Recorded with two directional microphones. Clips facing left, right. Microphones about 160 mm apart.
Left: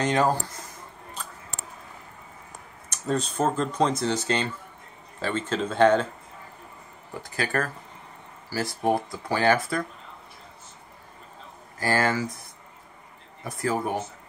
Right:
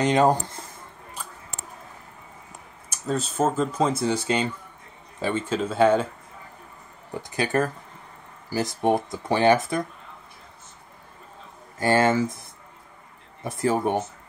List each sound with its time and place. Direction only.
0.0 s speech: 20° right (ahead or behind)
2.9 s speech: 5° right (ahead or behind)
7.2 s speech: 20° right (ahead or behind)
11.8 s speech: 20° right (ahead or behind)
13.4 s speech: 25° right (ahead or behind)